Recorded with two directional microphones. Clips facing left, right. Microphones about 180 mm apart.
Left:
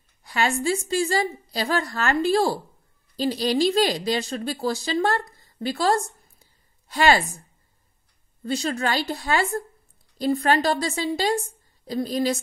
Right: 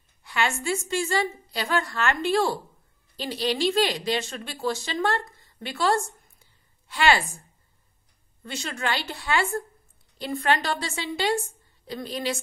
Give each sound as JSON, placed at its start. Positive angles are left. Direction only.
{"t": 0.2, "sound": "a woman's voice", "side_deg": 40}
{"t": 6.4, "sound": "a sound", "side_deg": 40}
{"t": 8.5, "sound": "a woman's voice", "side_deg": 35}